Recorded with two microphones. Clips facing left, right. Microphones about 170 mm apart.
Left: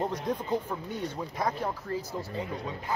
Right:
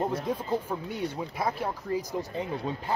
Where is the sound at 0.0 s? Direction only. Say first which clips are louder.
Right 1 dB; 10° right (ahead or behind).